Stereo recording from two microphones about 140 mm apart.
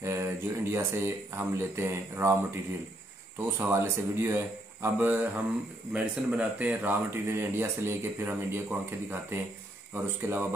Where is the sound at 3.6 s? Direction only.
20° right (ahead or behind).